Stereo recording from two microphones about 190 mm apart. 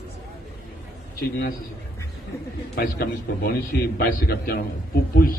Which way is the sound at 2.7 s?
55° left (ahead or behind).